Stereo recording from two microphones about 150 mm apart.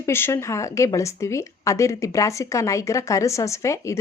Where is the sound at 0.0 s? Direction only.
15° left (ahead or behind).